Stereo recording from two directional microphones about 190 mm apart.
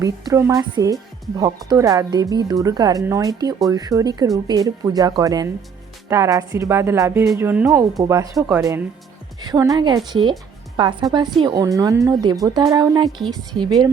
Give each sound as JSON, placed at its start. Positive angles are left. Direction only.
{"t": 0.0, "sound": "a woman's voice", "side_deg": -15}
{"t": 8.4, "sound": "speech", "side_deg": -5}
{"t": 9.4, "sound": "a woman's voice", "side_deg": -20}